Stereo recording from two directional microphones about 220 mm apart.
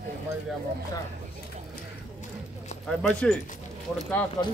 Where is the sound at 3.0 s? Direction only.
5° left (ahead or behind).